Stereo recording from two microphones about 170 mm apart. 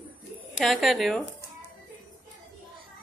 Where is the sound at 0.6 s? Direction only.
Centre (ahead or behind).